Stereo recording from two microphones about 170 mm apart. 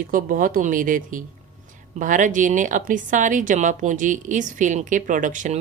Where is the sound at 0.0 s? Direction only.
55° right (ahead or behind).